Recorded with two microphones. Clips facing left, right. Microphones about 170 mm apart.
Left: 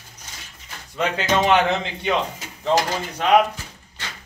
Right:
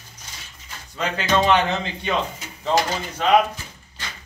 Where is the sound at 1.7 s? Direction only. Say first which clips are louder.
Left 2 dB; 20° left (ahead or behind).